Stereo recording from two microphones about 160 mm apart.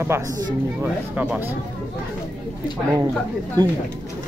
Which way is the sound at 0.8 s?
10° right (ahead or behind).